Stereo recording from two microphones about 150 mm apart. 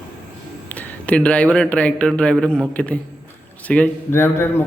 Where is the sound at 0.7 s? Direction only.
10° left (ahead or behind).